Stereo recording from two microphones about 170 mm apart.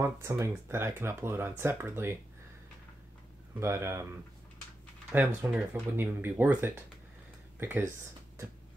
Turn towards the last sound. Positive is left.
turn(degrees=-15)  # may be behind; listen again after turning